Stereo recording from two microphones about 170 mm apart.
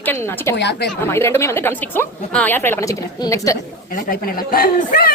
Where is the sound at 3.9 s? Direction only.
60° left (ahead or behind).